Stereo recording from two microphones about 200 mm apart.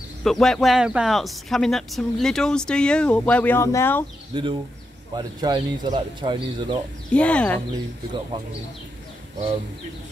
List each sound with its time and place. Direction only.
0.2 s speech: centre (ahead or behind)
5.1 s speech: 20° right (ahead or behind)
7.1 s speech: 5° left (ahead or behind)
7.7 s speech: 20° right (ahead or behind)